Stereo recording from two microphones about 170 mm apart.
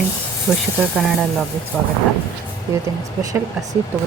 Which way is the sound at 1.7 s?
Centre (ahead or behind).